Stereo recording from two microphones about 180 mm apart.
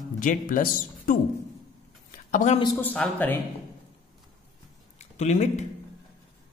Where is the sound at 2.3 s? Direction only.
40° left (ahead or behind).